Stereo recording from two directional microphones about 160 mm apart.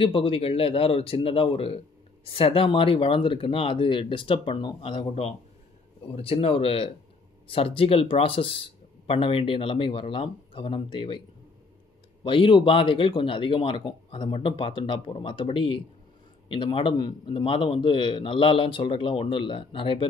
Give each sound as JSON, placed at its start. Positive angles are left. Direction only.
{"t": 0.0, "sound": "a man's voice", "side_deg": 35}